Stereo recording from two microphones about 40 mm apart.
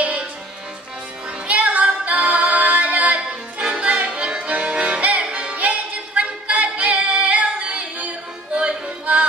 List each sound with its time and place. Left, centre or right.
0.0 s music: right
1.5 s music: right